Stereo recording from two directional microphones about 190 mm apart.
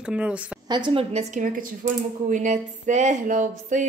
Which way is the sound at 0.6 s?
25° right (ahead or behind).